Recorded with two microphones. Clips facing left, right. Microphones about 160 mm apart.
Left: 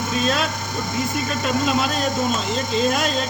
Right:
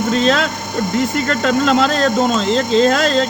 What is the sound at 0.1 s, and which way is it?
Speech, 90° right.